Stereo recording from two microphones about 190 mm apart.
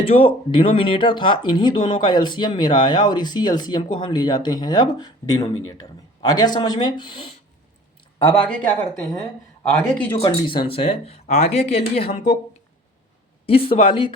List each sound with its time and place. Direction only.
0.0 s speech: 30° left (ahead or behind)
8.2 s speech: 10° left (ahead or behind)
9.6 s speech: 10° left (ahead or behind)
10.2 s speech: 25° left (ahead or behind)
13.4 s speech: 30° left (ahead or behind)